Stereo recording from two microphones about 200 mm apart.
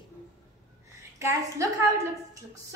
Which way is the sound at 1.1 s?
15° right (ahead or behind).